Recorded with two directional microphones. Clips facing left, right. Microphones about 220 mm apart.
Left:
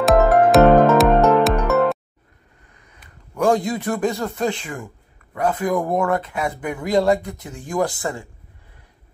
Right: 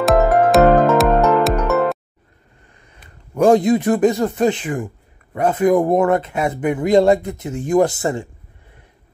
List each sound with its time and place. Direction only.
0.0 s music: centre (ahead or behind)
3.0 s speech: 20° right (ahead or behind)